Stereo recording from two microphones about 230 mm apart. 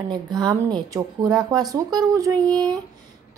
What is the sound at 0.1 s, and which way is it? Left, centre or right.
A woman's voice, centre.